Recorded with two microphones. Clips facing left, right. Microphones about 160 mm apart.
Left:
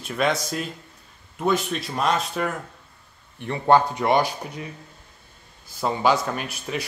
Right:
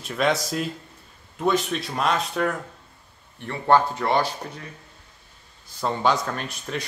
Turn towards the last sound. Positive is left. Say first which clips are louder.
# left 1 dB
turn(degrees=5)  # may be behind; listen again after turning